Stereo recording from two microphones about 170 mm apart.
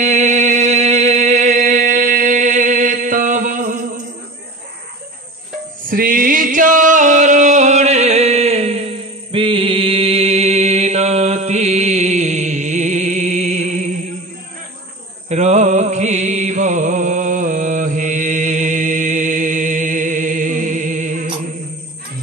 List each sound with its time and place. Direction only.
0.0 s a sound: 45° right (ahead or behind)
5.9 s music: 55° right (ahead or behind)
15.2 s music: 40° right (ahead or behind)